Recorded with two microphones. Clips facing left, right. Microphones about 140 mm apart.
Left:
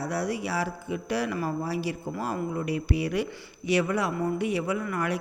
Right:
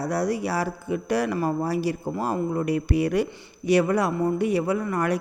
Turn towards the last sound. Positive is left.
turn(degrees=-40)  # may be behind; listen again after turning